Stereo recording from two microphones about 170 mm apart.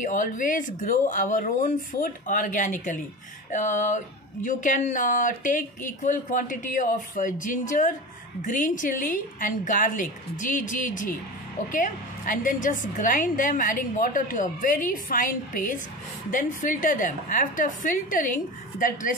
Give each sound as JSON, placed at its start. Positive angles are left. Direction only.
{"t": 0.0, "sound": "speech", "side_deg": 50}